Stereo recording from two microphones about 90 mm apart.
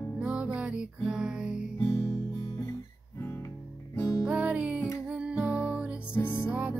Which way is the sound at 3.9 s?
35° left (ahead or behind).